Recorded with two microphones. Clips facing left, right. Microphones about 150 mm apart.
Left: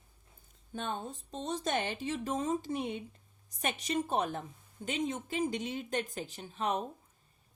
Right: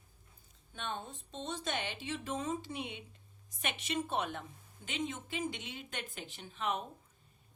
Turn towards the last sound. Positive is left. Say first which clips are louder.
# left 3 dB
turn(degrees=40)  # may be behind; listen again after turning